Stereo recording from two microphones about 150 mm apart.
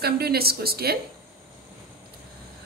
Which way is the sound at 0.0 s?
90° right.